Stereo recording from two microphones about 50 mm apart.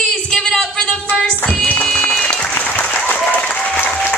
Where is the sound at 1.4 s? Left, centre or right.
Left.